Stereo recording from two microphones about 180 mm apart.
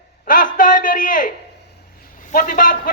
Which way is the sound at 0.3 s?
50° left (ahead or behind).